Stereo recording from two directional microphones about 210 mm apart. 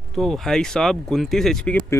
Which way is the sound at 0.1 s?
Centre (ahead or behind).